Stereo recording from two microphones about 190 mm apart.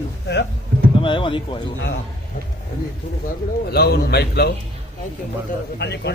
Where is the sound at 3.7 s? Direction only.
55° left (ahead or behind).